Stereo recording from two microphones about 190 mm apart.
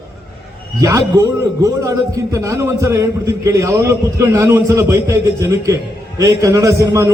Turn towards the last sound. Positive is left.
turn(degrees=-15)  # may be behind; listen again after turning